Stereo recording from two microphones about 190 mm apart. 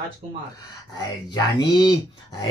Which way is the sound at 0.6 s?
20° left (ahead or behind).